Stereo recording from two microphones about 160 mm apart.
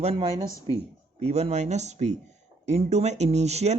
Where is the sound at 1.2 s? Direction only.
45° right (ahead or behind).